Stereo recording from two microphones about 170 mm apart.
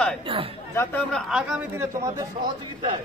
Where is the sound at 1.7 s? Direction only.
20° right (ahead or behind).